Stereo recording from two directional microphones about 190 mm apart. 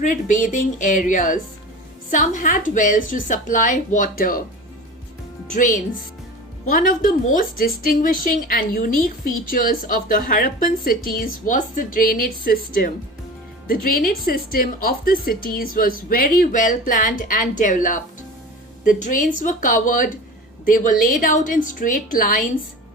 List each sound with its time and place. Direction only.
0.0 s a woman's voice: 40° left (ahead or behind)
5.5 s a woman's voice: 45° left (ahead or behind)